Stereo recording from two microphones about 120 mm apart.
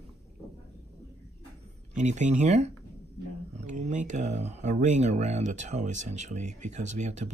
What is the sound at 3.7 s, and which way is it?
Speech, 85° right.